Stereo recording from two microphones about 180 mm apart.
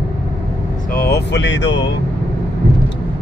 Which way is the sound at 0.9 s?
60° left (ahead or behind).